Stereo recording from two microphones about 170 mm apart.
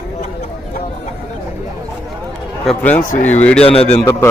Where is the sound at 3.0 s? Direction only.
45° left (ahead or behind).